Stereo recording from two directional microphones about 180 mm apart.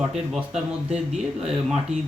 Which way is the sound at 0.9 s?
35° right (ahead or behind).